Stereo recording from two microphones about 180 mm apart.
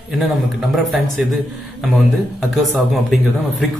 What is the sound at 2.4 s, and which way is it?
Speech, centre (ahead or behind).